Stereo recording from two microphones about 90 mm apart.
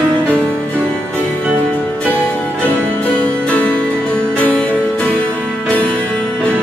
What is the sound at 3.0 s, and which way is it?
Music, 15° left (ahead or behind).